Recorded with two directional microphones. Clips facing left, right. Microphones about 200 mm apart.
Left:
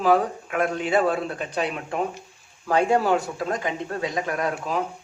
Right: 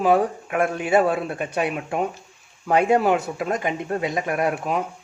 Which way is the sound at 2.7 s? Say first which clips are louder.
Right 2 dB; 10° right (ahead or behind).